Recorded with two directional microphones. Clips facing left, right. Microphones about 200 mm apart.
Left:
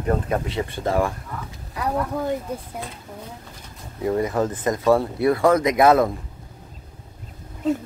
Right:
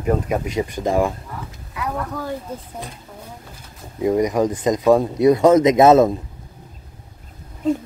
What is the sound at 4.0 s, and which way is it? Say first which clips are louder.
Speech: right 4 dB; 15° right (ahead or behind).